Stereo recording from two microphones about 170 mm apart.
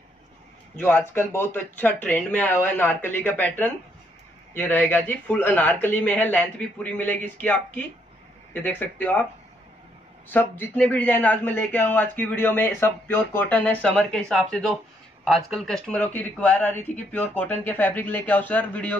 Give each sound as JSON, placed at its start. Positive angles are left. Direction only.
{"t": 0.7, "sound": "speech", "side_deg": 10}
{"t": 10.3, "sound": "speech", "side_deg": 10}